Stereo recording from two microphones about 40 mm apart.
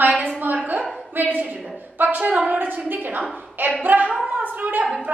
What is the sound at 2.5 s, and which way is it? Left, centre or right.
A woman's voice, right.